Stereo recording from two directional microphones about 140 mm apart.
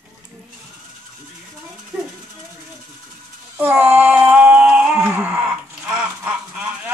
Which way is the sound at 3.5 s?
10° right (ahead or behind).